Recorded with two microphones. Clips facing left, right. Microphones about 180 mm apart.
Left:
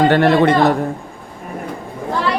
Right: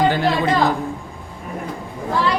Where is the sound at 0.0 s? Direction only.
65° left (ahead or behind).